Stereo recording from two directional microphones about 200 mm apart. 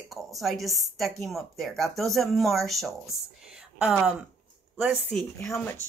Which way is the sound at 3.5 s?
5° right (ahead or behind).